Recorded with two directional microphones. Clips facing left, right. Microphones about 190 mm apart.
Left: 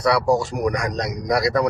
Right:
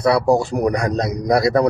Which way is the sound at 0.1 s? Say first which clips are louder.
Right 4 dB; 30° right (ahead or behind).